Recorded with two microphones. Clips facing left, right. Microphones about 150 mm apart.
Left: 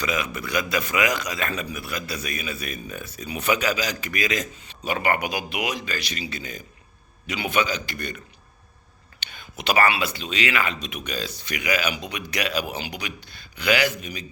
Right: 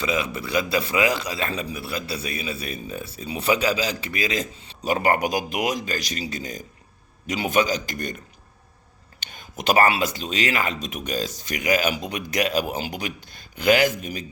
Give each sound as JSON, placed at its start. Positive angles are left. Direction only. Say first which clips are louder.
{"t": 0.0, "sound": "a man's voice", "louder": "right 2 dB", "side_deg": -30}
{"t": 9.2, "sound": "speech", "louder": "right 3 dB", "side_deg": -40}